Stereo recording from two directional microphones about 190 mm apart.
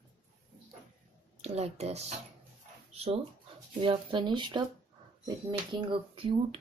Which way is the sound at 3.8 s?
25° right (ahead or behind).